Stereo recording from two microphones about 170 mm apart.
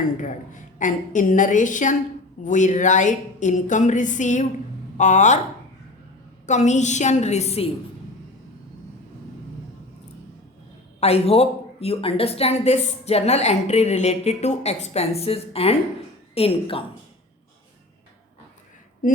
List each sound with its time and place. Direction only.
0.2 s a woman's voice: 50° left (ahead or behind)
6.4 s a woman's voice: 45° left (ahead or behind)
11.0 s a woman's voice: 35° left (ahead or behind)